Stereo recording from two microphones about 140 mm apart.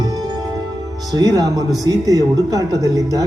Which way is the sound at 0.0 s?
30° right (ahead or behind).